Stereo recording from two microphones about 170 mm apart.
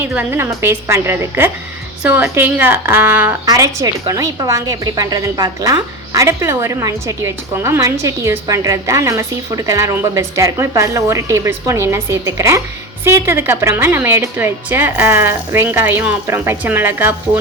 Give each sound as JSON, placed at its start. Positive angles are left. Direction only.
{"t": 0.0, "sound": "a woman's voice", "side_deg": -10}